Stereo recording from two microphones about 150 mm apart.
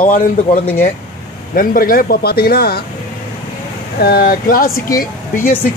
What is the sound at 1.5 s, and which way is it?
A man's voice, 70° left (ahead or behind).